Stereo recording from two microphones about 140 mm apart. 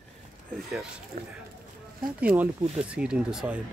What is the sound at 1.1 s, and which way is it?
Speech, 90° right.